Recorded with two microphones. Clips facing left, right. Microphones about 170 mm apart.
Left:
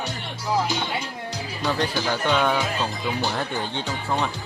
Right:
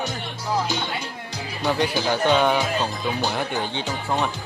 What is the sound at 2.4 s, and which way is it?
Speech, 20° right (ahead or behind).